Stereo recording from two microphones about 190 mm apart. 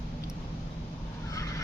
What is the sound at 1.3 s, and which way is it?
Fowl, 15° left (ahead or behind).